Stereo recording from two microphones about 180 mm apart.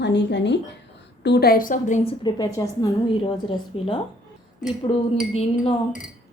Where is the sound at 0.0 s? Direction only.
75° left (ahead or behind).